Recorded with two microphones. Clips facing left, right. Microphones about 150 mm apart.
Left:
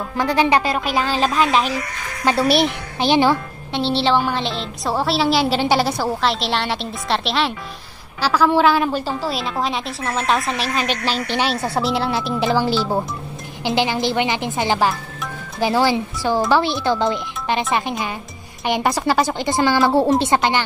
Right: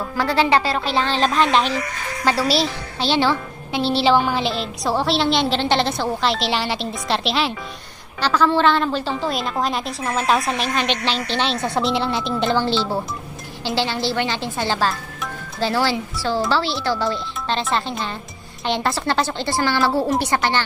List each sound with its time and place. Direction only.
0.2 s speech: 15° left (ahead or behind)
2.4 s a woman's voice: 55° left (ahead or behind)
3.0 s speech: 15° left (ahead or behind)
3.7 s a woman's voice: 5° right (ahead or behind); by 20.6 s 20° left (ahead or behind)